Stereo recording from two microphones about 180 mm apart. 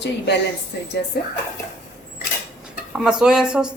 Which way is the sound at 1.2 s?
65° left (ahead or behind).